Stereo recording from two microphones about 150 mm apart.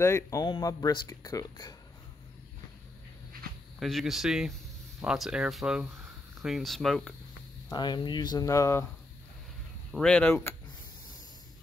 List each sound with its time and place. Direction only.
0.0 s speech: 20° left (ahead or behind)
3.8 s speech: centre (ahead or behind)
7.7 s speech: 30° left (ahead or behind)
9.9 s speech: 5° left (ahead or behind)